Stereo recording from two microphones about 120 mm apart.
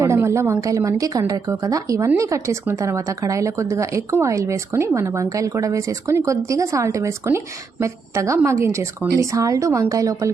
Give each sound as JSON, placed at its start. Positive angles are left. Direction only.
{"t": 0.0, "sound": "a woman's voice", "side_deg": -25}